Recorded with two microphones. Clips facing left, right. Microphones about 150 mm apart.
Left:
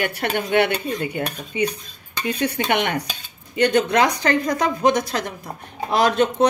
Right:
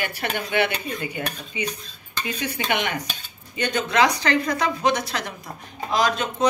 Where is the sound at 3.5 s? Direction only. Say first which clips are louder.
Left 8 dB; 70° left (ahead or behind).